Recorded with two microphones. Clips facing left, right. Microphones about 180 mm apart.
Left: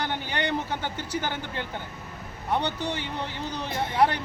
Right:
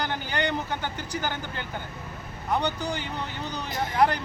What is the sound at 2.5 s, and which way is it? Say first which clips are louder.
Speech: even; 25° left (ahead or behind).